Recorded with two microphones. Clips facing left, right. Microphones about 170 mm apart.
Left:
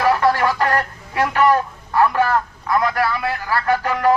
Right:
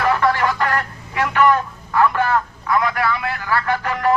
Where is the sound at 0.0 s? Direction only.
35° left (ahead or behind).